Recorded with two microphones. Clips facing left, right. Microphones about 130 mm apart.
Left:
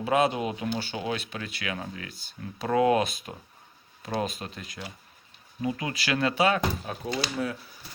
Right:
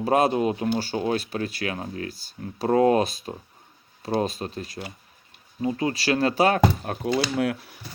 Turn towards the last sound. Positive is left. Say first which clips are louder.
# right 6 dB
turn(degrees=-70)  # may be behind; listen again after turning